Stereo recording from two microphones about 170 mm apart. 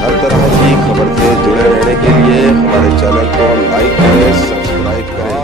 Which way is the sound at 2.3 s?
Centre (ahead or behind).